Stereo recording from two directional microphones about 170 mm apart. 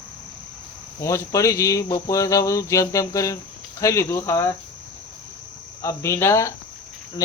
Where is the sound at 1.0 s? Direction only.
20° left (ahead or behind).